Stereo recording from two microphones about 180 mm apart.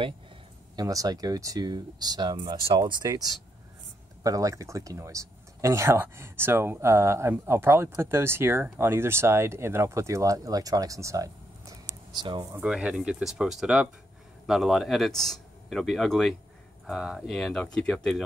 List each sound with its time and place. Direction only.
0.7 s speech: 20° right (ahead or behind)
12.5 s speech: 5° right (ahead or behind)